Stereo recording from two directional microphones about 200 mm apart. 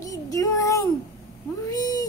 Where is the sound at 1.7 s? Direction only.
20° left (ahead or behind).